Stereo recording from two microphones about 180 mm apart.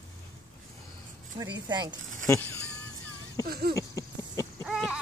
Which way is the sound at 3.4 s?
55° right (ahead or behind).